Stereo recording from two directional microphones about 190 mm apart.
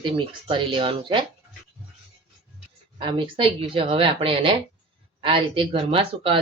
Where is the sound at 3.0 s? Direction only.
25° right (ahead or behind).